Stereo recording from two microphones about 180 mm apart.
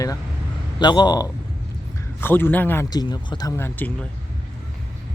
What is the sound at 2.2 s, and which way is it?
Speech, 10° left (ahead or behind).